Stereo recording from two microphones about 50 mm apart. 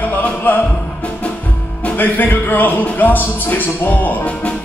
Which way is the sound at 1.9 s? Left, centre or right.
Left.